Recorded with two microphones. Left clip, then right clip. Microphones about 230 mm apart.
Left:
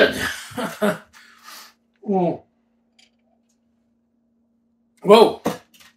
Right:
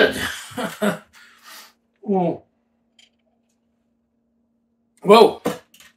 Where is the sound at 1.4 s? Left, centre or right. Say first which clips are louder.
Left 2 dB; centre.